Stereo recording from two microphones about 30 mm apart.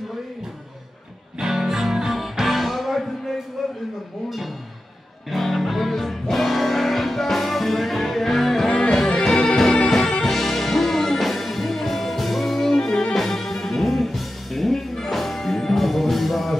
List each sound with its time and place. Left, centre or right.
1.4 s music: centre
5.3 s music: centre
8.6 s music: left
13.1 s music: centre